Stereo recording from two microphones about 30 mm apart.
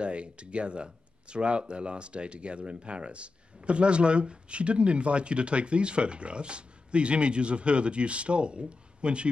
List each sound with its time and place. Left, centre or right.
0.0 s speech: right